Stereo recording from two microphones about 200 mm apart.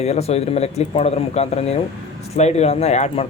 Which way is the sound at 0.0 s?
30° left (ahead or behind).